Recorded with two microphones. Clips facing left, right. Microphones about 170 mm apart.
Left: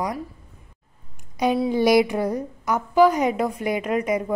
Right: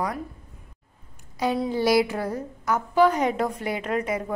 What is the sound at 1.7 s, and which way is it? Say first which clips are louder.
A woman's voice: left 3 dB; 15° left (ahead or behind).